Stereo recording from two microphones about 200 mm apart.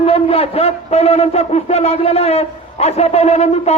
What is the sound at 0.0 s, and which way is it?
A man's voice, 30° left (ahead or behind).